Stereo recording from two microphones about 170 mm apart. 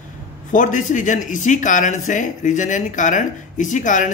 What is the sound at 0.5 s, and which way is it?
Speech, 50° left (ahead or behind).